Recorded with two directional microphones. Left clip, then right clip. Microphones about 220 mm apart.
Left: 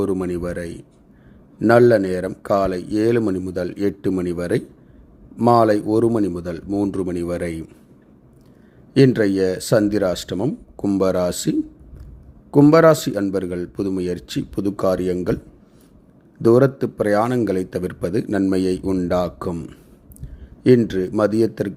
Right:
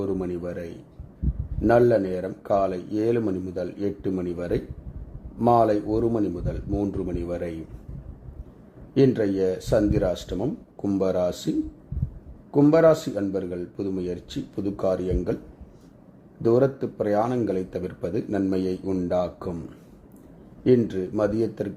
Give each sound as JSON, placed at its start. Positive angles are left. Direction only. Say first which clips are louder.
{"t": 0.0, "sound": "speech", "louder": "left 6 dB", "side_deg": 25}
{"t": 8.9, "sound": "speech", "louder": "left 5 dB", "side_deg": 25}
{"t": 16.4, "sound": "speech", "louder": "left 6 dB", "side_deg": 25}
{"t": 20.7, "sound": "speech", "louder": "left 5 dB", "side_deg": 20}